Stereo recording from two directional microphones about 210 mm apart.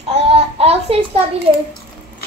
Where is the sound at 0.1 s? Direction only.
30° right (ahead or behind).